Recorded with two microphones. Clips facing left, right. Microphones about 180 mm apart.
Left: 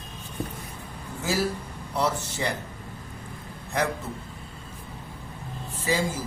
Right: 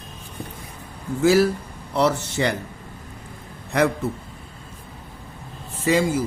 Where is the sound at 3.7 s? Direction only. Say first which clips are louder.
Right 7 dB; 80° right.